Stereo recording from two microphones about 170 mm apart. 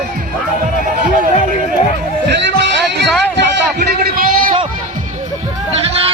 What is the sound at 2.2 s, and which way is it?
Music, 90° right.